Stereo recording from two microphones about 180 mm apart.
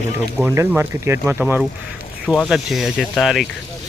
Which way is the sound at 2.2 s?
Centre (ahead or behind).